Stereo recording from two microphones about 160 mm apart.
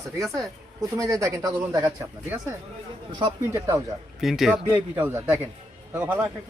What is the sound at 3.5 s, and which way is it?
Speech, 15° right (ahead or behind).